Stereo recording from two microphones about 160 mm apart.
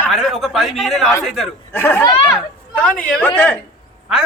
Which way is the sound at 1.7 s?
15° left (ahead or behind).